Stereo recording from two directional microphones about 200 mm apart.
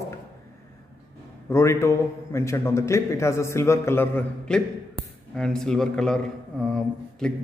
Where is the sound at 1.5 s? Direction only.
15° left (ahead or behind).